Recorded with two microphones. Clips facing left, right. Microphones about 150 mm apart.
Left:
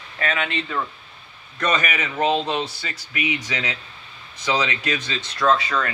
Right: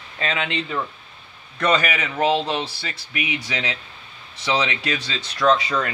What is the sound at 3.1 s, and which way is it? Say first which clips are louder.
Speech: left 1 dB; 25° right (ahead or behind).